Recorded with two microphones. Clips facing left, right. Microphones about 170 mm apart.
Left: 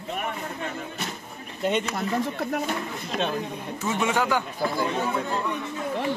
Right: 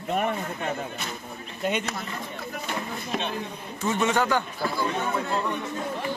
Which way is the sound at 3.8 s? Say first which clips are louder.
Right 1 dB; 10° left (ahead or behind).